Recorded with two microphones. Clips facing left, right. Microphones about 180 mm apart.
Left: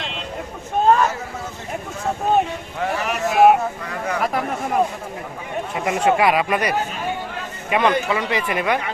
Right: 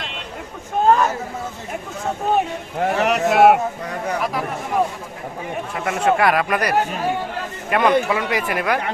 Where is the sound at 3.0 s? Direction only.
70° right (ahead or behind).